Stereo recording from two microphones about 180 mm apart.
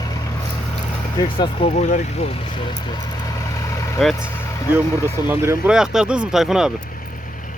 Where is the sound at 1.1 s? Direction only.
25° left (ahead or behind).